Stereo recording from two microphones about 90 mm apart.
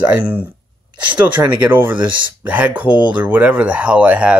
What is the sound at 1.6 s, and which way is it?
Speech, 20° right (ahead or behind).